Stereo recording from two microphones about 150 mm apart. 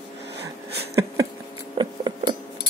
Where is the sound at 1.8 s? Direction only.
30° right (ahead or behind).